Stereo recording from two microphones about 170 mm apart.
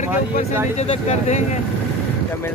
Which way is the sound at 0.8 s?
40° left (ahead or behind).